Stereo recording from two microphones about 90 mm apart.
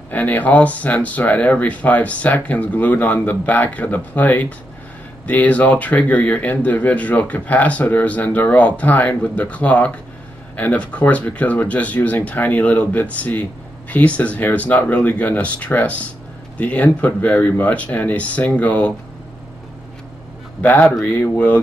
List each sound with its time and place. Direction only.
0.1 s speech: 20° left (ahead or behind)
20.6 s speech: 20° left (ahead or behind)